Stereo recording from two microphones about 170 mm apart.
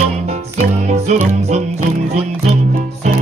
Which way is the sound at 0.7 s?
40° right (ahead or behind).